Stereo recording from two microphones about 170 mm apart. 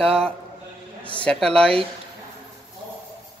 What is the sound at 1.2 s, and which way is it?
Speech, 5° left (ahead or behind).